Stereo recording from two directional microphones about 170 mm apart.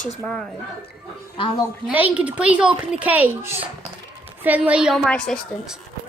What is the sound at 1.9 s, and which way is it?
A child's voice, 10° right (ahead or behind).